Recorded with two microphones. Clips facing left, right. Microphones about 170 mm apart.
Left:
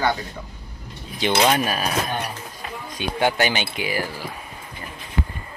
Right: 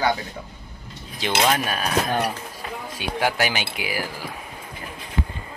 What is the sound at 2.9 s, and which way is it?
Speech, 5° right (ahead or behind).